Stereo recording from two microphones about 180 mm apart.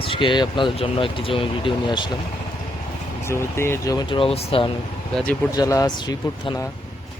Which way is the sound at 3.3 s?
15° left (ahead or behind).